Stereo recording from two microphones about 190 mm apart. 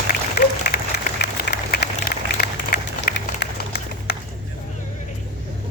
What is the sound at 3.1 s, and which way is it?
Run, 55° left (ahead or behind).